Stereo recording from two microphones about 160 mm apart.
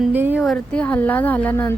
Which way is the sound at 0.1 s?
10° right (ahead or behind).